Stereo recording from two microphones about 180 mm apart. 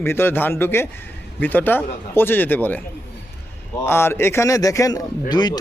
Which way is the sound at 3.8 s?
15° left (ahead or behind).